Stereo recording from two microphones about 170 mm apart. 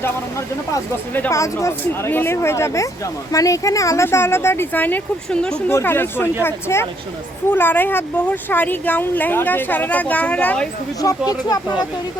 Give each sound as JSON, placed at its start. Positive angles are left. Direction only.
{"t": 0.7, "sound": "speech", "side_deg": 15}
{"t": 11.3, "sound": "speech", "side_deg": 20}